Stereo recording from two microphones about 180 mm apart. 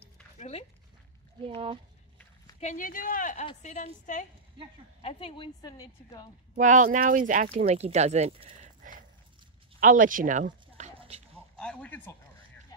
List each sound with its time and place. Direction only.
0.4 s speech: 35° left (ahead or behind)
1.4 s speech: 30° right (ahead or behind)
2.6 s speech: 45° left (ahead or behind)
5.0 s a woman's voice: 30° left (ahead or behind)
6.5 s speech: 45° right (ahead or behind)
7.5 s speech: 35° right (ahead or behind)
9.8 s speech: 50° right (ahead or behind)
11.0 s a sound: 35° right (ahead or behind)
11.5 s speech: 5° left (ahead or behind)